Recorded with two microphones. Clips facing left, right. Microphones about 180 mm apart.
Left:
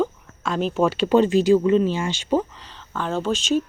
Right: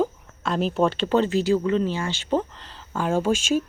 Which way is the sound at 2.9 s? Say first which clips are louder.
Right 2 dB; 10° right (ahead or behind).